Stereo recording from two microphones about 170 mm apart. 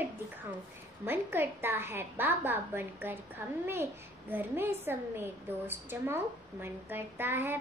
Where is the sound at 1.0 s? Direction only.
15° right (ahead or behind).